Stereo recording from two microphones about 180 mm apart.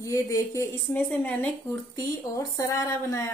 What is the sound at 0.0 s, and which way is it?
A woman's voice, 15° left (ahead or behind).